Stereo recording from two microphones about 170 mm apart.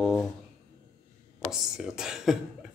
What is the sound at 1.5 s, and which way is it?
Speech, 5° right (ahead or behind).